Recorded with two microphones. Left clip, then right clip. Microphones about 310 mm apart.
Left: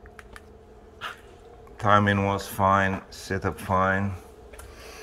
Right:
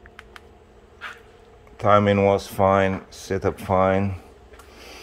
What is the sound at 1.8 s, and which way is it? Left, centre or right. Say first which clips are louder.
Speech: right 4 dB; centre.